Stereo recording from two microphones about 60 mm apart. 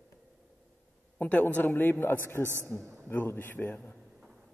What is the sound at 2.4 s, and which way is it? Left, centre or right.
Speech, right.